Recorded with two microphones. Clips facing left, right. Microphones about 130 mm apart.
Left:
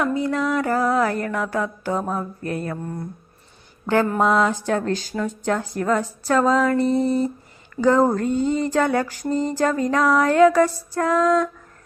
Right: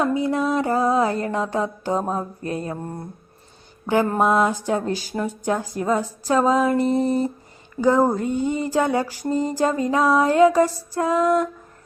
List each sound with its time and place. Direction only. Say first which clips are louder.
0.1 s a sound: right 1 dB; 20° right (ahead or behind)
2.7 s speech: left 1 dB; 35° right (ahead or behind)
4.2 s speech: even; 15° right (ahead or behind)